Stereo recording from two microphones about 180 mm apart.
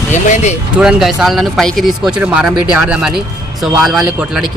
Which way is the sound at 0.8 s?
5° right (ahead or behind).